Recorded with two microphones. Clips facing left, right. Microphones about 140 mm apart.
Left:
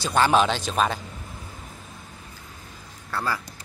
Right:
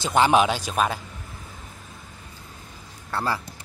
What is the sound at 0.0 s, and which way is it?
Speech, 15° right (ahead or behind).